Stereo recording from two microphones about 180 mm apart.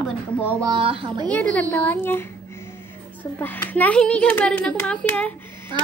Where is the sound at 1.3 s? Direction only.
5° left (ahead or behind).